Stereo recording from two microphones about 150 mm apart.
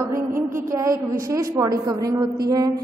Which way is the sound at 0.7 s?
20° right (ahead or behind).